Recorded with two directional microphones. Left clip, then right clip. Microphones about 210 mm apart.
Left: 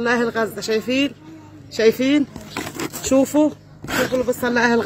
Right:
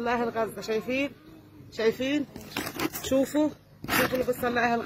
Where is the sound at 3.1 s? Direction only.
25° left (ahead or behind).